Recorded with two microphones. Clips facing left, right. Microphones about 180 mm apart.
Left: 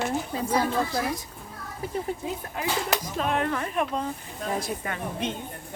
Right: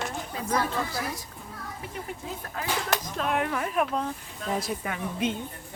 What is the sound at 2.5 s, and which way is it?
Speech, 15° left (ahead or behind).